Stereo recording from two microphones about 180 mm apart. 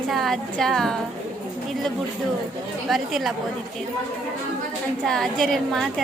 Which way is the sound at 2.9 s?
Centre (ahead or behind).